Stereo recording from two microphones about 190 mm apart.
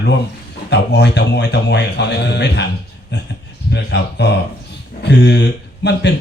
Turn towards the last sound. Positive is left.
turn(degrees=65)  # may be behind; listen again after turning